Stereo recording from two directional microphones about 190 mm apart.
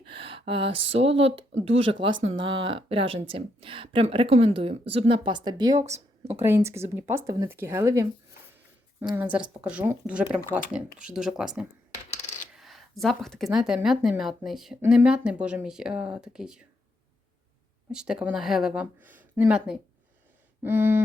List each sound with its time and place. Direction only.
0.1 s a sound: 30° right (ahead or behind)
1.2 s speech: 30° right (ahead or behind)
5.8 s speech: 35° right (ahead or behind)
6.4 s speech: 15° right (ahead or behind)
17.9 s speech: 5° right (ahead or behind)
20.6 s a sound: 10° right (ahead or behind)